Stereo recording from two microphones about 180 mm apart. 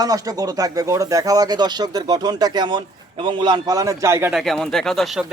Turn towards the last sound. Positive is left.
turn(degrees=0)  # may be behind; listen again after turning